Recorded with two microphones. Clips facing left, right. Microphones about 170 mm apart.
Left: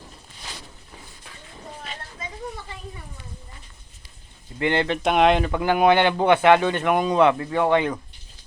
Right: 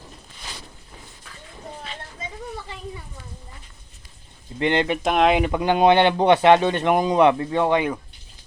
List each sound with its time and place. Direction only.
4.6 s speech: 20° right (ahead or behind)
5.0 s speech: centre (ahead or behind)
5.4 s speech: 20° right (ahead or behind)